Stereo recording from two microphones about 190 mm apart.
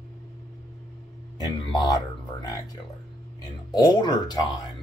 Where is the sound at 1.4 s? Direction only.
20° left (ahead or behind).